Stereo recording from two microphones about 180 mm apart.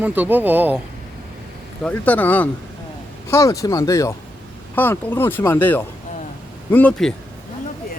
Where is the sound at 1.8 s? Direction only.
10° left (ahead or behind).